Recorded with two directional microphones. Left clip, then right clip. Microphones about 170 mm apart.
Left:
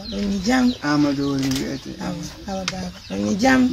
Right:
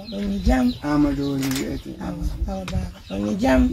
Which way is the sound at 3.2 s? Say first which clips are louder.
Left 2 dB; 10° left (ahead or behind).